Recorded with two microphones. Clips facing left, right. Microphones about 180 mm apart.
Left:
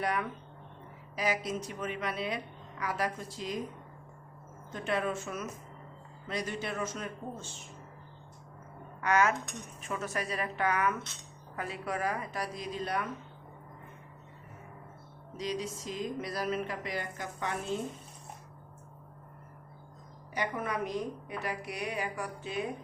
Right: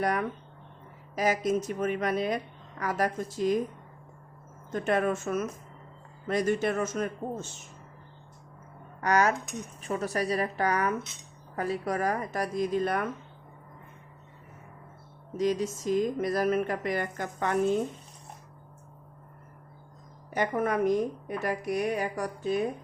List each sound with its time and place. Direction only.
0.0 s speech: 45° right (ahead or behind)
4.7 s speech: 50° right (ahead or behind)
9.0 s speech: 40° right (ahead or behind)
15.4 s speech: 50° right (ahead or behind)
20.3 s speech: 50° right (ahead or behind)